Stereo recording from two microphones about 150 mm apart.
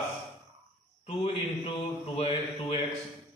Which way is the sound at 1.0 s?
40° left (ahead or behind).